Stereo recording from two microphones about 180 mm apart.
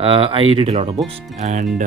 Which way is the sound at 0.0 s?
30° right (ahead or behind).